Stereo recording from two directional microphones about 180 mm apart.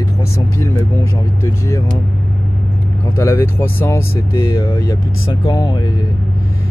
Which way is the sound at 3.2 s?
15° left (ahead or behind).